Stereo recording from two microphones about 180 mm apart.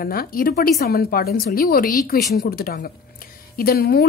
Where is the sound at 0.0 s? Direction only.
55° left (ahead or behind).